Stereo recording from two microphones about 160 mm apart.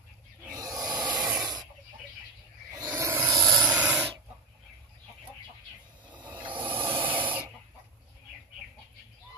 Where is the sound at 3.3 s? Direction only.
25° right (ahead or behind).